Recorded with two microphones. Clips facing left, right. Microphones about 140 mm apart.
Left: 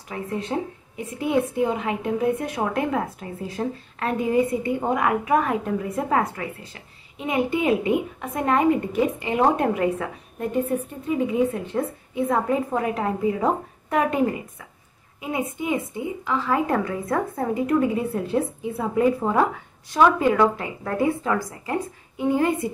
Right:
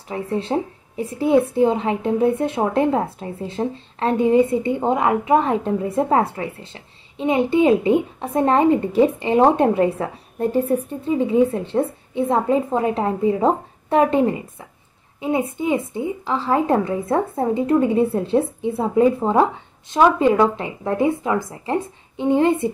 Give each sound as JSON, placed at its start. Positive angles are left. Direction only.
{"t": 0.1, "sound": "a woman's voice", "side_deg": -30}